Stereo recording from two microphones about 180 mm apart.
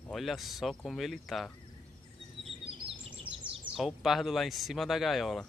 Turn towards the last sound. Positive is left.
turn(degrees=0)  # may be behind; listen again after turning